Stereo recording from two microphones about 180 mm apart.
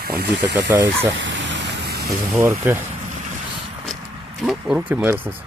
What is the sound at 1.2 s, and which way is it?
Vehicle, 90° right.